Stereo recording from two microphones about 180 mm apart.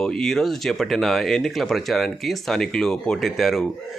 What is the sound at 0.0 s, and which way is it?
Speech, 5° left (ahead or behind).